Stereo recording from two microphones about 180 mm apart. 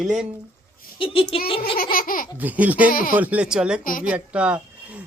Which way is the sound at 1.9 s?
50° left (ahead or behind).